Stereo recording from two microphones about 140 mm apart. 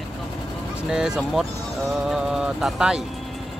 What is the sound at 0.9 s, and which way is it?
Speech, 5° right (ahead or behind).